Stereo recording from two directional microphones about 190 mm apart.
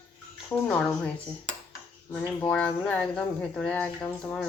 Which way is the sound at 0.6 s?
5° left (ahead or behind).